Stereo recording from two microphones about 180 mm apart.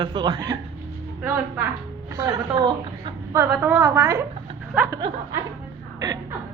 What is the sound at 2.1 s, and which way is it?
A woman's voice, 20° right (ahead or behind).